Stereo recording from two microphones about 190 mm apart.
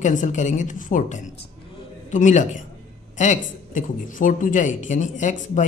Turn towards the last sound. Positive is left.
turn(degrees=40)  # may be behind; listen again after turning